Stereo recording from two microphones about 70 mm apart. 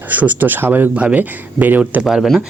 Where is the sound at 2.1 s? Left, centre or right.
Centre.